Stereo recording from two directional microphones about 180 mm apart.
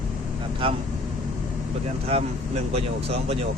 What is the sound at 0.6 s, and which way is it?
Speech, 30° right (ahead or behind).